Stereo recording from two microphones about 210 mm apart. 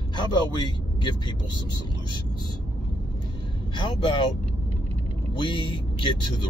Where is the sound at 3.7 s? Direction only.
25° left (ahead or behind).